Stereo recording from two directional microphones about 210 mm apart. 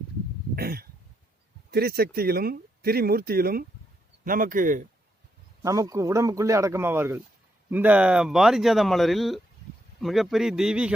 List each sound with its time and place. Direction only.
0.5 s a sound: 45° right (ahead or behind)
1.7 s speech: 45° right (ahead or behind)
5.6 s a man's voice: 15° right (ahead or behind)